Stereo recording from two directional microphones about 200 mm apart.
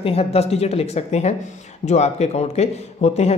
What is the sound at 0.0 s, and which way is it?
Speech, 30° left (ahead or behind).